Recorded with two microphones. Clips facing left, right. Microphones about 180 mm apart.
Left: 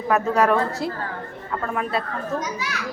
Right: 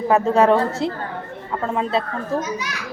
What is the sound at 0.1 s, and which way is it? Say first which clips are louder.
A woman's voice: right 3 dB; 25° right (ahead or behind).